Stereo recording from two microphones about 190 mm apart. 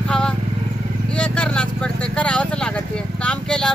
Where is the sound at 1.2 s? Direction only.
5° left (ahead or behind).